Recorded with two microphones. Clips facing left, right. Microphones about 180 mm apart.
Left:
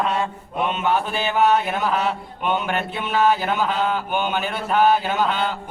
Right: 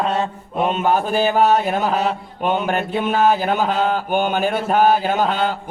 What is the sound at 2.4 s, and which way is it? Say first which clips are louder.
Mantra: right 3 dB; 40° right (ahead or behind).